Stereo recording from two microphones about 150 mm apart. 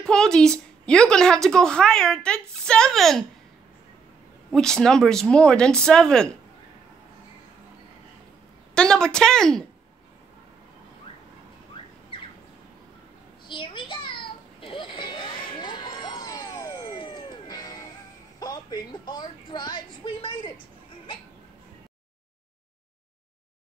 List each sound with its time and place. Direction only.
0.0 s a woman's voice: 5° left (ahead or behind)
4.5 s speech: 5° left (ahead or behind)
8.7 s speech: 5° left (ahead or behind)
13.5 s a sound: 35° left (ahead or behind)